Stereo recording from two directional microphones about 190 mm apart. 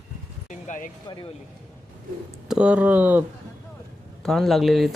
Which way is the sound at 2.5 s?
5° right (ahead or behind).